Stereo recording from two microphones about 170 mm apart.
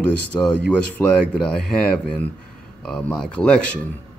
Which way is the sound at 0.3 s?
5° left (ahead or behind).